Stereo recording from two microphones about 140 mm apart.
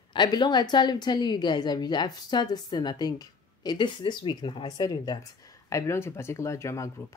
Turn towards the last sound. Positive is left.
turn(degrees=20)  # may be behind; listen again after turning